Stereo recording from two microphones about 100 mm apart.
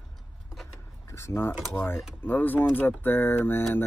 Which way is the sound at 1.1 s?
30° left (ahead or behind).